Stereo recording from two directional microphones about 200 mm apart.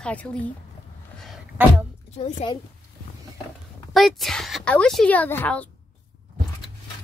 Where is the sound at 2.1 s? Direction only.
25° left (ahead or behind).